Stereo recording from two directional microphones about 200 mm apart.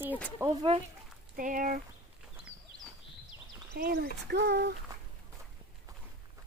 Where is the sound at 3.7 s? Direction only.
50° right (ahead or behind).